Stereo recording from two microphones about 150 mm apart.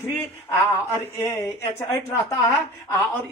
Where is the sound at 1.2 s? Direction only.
20° left (ahead or behind).